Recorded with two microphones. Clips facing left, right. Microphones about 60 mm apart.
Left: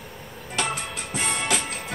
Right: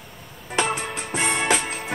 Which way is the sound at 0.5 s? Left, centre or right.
Right.